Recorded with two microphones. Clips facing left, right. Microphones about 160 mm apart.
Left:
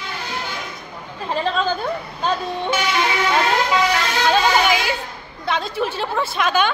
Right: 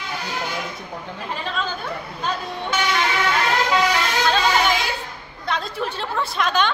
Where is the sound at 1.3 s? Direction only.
35° left (ahead or behind).